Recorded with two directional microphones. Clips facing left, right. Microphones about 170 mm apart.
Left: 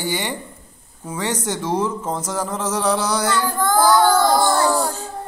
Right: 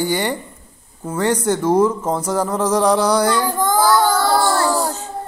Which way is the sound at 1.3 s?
10° right (ahead or behind).